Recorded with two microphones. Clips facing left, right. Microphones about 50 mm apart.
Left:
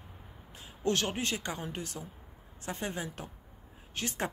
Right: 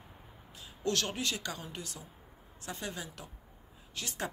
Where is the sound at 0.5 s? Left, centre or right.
Left.